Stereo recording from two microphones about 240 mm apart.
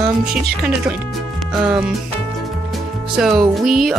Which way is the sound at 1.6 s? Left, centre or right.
Centre.